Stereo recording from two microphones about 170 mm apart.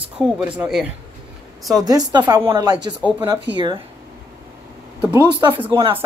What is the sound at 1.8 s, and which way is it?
Speech, 25° right (ahead or behind).